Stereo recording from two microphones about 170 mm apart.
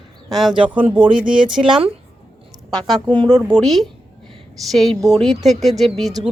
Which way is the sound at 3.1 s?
30° right (ahead or behind).